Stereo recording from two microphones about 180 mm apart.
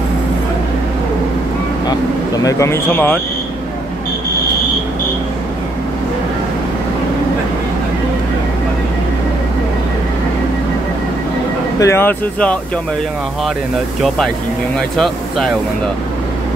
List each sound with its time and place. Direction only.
1.9 s speech: 20° left (ahead or behind)
11.8 s speech: 15° left (ahead or behind)
14.0 s speech: centre (ahead or behind)